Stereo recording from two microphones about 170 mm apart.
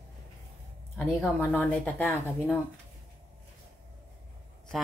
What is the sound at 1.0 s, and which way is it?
Speech, 10° left (ahead or behind).